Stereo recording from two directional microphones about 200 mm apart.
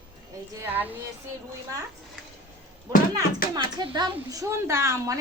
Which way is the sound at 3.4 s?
45° left (ahead or behind).